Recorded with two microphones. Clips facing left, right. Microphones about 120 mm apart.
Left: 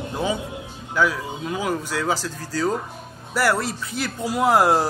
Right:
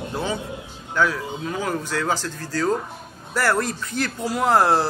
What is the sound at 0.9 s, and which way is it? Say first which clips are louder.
Speech: even; 10° left (ahead or behind).